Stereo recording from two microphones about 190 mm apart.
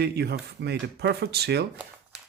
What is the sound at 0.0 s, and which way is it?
Speech, 60° right (ahead or behind).